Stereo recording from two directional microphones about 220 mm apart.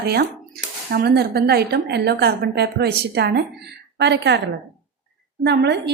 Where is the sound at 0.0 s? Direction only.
45° right (ahead or behind).